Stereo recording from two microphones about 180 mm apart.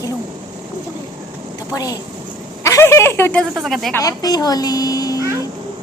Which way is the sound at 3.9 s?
20° left (ahead or behind).